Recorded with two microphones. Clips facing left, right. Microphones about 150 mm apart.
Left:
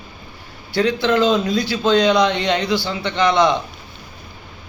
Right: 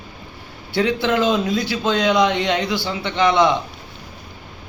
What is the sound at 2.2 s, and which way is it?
Speech, 5° right (ahead or behind).